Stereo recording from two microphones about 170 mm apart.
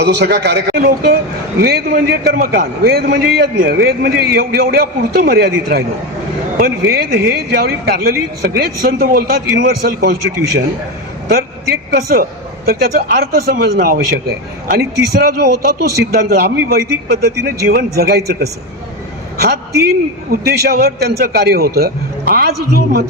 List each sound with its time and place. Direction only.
0.0 s a man's voice: 75° right (ahead or behind)
19.8 s a man's voice: 70° right (ahead or behind)